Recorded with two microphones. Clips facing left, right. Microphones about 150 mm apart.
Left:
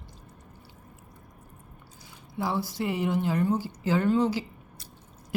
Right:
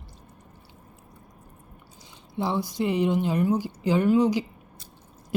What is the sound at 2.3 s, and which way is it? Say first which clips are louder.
A woman's voice: right 3 dB; 20° right (ahead or behind).